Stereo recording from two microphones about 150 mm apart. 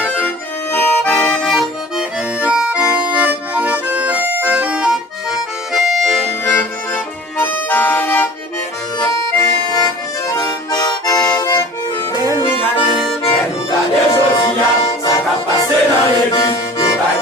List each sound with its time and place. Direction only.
0.0 s accordion: 10° left (ahead or behind)
1.4 s accordion: centre (ahead or behind)
9.0 s accordion: 25° left (ahead or behind)
12.4 s harmonica: 35° left (ahead or behind)
14.1 s music: 35° left (ahead or behind)